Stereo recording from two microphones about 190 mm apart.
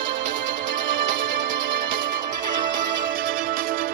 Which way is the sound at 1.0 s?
45° right (ahead or behind).